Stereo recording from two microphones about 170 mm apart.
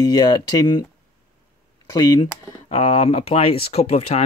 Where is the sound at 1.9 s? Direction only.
25° left (ahead or behind).